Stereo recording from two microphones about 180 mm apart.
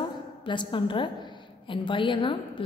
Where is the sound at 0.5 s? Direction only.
25° left (ahead or behind).